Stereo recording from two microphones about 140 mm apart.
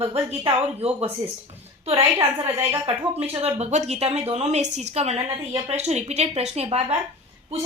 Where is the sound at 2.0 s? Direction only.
20° right (ahead or behind).